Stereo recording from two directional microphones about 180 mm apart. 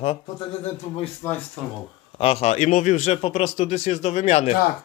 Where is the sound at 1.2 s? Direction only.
10° left (ahead or behind).